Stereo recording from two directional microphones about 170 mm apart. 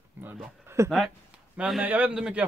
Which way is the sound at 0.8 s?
Centre (ahead or behind).